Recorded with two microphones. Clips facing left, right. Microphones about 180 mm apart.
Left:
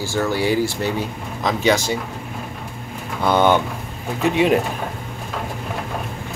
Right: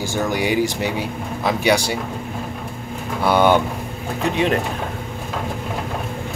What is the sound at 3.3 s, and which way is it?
Speech, 10° right (ahead or behind).